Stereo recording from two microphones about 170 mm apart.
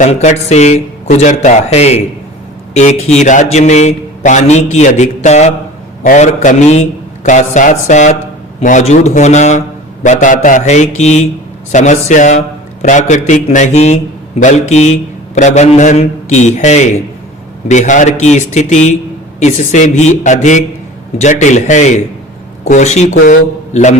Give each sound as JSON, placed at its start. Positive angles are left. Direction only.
{"t": 0.0, "sound": "a man's voice", "side_deg": 45}